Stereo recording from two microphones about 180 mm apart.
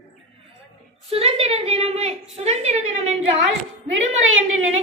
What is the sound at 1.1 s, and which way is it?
A woman's voice, 35° right (ahead or behind).